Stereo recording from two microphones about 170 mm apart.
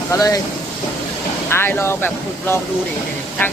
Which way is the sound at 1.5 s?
15° left (ahead or behind).